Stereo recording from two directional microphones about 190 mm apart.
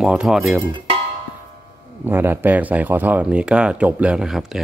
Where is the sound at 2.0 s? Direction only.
10° right (ahead or behind).